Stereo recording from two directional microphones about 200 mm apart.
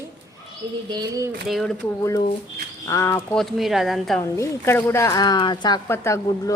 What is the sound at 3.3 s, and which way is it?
Speech, centre (ahead or behind).